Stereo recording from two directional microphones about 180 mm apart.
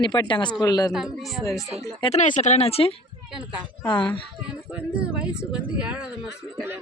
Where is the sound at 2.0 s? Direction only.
40° left (ahead or behind).